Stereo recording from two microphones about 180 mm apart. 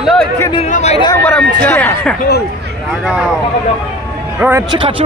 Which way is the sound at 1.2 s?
10° left (ahead or behind).